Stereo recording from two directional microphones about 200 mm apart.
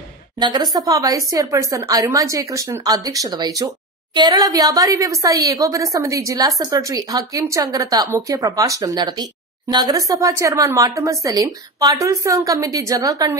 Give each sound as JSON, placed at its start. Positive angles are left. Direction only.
{"t": 0.4, "sound": "a woman's voice", "side_deg": -20}